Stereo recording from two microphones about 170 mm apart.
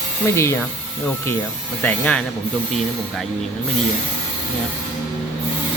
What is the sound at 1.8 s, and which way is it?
Speech, 10° left (ahead or behind).